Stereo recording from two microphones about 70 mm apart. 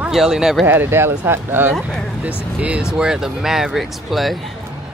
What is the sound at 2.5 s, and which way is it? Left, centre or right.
Speech, centre.